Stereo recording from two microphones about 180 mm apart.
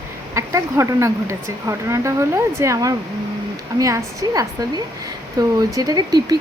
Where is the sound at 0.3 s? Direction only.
15° right (ahead or behind).